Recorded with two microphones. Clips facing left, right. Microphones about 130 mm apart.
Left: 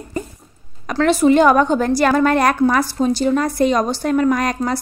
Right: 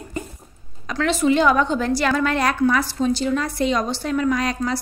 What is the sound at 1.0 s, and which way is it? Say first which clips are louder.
A woman's voice: left 5 dB; 50° left (ahead or behind).